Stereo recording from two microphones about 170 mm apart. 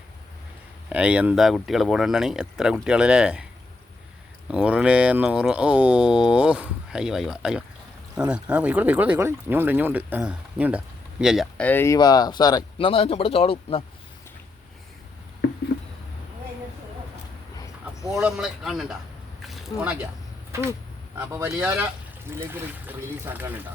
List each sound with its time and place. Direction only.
0.9 s speech: 5° right (ahead or behind)
4.5 s speech: 5° right (ahead or behind)
11.6 s speech: 10° left (ahead or behind)
12.9 s speech: 35° left (ahead or behind)
15.7 s a sound: 90° left
18.0 s speech: 5° right (ahead or behind)
19.4 s a sound: centre (ahead or behind)
21.2 s speech: 15° right (ahead or behind)